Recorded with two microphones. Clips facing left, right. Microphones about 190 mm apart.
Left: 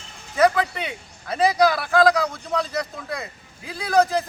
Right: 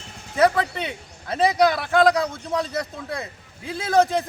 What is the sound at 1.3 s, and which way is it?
Speech, 25° right (ahead or behind).